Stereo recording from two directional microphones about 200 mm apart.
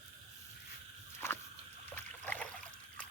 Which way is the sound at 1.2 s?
15° left (ahead or behind).